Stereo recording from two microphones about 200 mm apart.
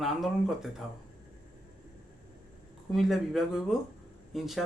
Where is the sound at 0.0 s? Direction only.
Centre (ahead or behind).